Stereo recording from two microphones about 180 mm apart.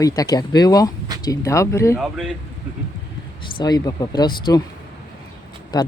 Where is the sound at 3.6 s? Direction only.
20° left (ahead or behind).